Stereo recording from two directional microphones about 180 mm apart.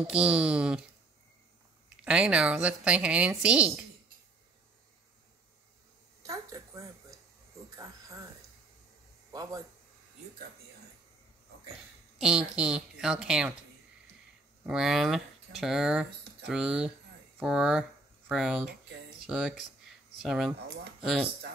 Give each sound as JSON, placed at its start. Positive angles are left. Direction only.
{"t": 0.0, "sound": "speech", "side_deg": -5}
{"t": 2.0, "sound": "a woman's voice", "side_deg": -5}
{"t": 6.2, "sound": "a sound", "side_deg": -20}
{"t": 9.3, "sound": "a man's voice", "side_deg": -20}
{"t": 12.2, "sound": "speech", "side_deg": -5}
{"t": 14.7, "sound": "speech", "side_deg": 0}